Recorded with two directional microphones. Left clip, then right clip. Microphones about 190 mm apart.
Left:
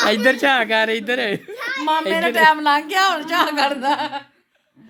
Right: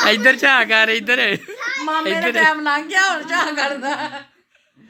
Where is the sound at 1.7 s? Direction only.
75° left (ahead or behind).